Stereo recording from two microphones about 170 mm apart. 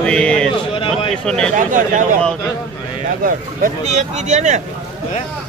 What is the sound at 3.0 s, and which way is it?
Speech, 50° right (ahead or behind).